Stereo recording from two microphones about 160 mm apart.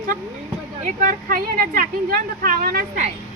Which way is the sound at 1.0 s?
60° right (ahead or behind).